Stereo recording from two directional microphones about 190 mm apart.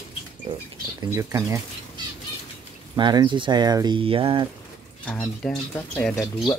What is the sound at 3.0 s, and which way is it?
Speech, 25° right (ahead or behind).